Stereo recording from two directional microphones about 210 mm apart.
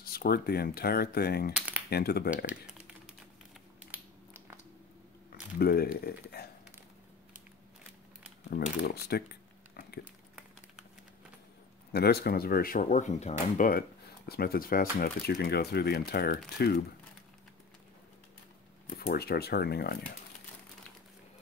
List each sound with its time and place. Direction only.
0.0 s speech: 45° left (ahead or behind)
3.8 s a sound: 10° right (ahead or behind)
5.6 s speech: 45° left (ahead or behind)
8.5 s a sound: 50° left (ahead or behind)
11.9 s speech: 50° left (ahead or behind)
18.9 s speech: 50° left (ahead or behind)